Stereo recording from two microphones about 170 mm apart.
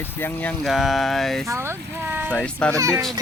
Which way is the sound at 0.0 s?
10° left (ahead or behind).